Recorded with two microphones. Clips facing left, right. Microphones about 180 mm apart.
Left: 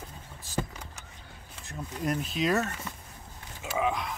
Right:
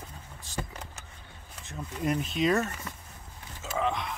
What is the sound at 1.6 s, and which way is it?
Speech, centre (ahead or behind).